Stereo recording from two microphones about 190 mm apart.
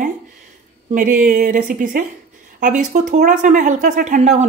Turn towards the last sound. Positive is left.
turn(degrees=-40)  # may be behind; listen again after turning